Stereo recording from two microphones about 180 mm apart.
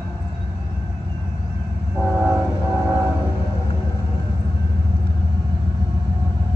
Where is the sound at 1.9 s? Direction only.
5° right (ahead or behind).